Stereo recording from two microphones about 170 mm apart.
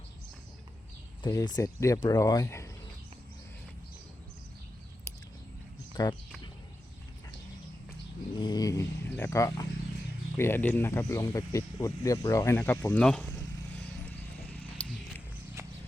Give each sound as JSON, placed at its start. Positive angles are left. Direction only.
{"t": 1.2, "sound": "speech", "side_deg": 25}
{"t": 6.0, "sound": "speech", "side_deg": 20}
{"t": 8.4, "sound": "speech", "side_deg": 25}
{"t": 14.6, "sound": "a sound", "side_deg": 5}
{"t": 15.6, "sound": "clip-clop", "side_deg": -15}